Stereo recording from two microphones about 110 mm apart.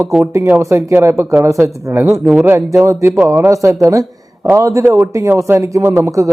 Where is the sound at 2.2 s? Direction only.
5° right (ahead or behind).